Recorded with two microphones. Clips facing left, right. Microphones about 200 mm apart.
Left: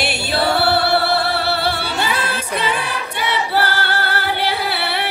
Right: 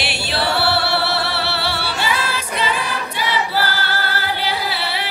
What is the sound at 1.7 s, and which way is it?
Music, 50° left (ahead or behind).